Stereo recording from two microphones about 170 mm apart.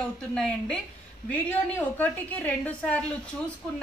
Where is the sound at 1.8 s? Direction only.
10° left (ahead or behind).